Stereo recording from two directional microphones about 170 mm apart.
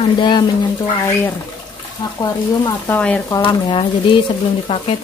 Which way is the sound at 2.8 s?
10° left (ahead or behind).